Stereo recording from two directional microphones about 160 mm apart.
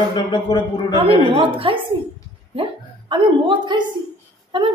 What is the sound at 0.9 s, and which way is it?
Speech, 30° right (ahead or behind).